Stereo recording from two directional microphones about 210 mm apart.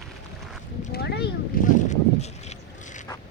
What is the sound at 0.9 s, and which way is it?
Boat, 50° left (ahead or behind).